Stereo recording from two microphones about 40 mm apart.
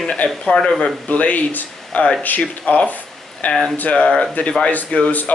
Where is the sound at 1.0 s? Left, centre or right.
Left.